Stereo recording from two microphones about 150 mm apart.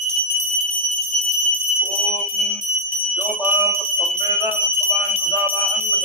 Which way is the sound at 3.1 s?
15° right (ahead or behind).